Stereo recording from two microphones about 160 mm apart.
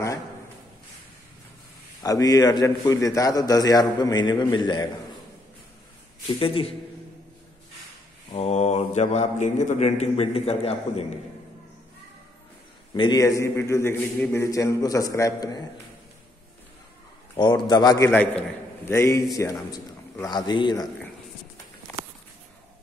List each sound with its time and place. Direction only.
2.0 s a man's voice: 25° left (ahead or behind)
6.4 s a man's voice: 35° left (ahead or behind)
8.3 s a man's voice: 40° left (ahead or behind)
12.9 s a man's voice: 30° left (ahead or behind)
17.4 s a man's voice: 25° left (ahead or behind)